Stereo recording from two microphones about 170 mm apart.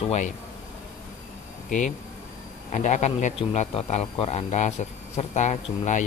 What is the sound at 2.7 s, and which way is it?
Speech, 45° left (ahead or behind).